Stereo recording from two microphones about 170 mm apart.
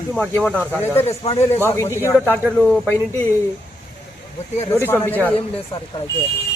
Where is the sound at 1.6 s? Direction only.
15° left (ahead or behind).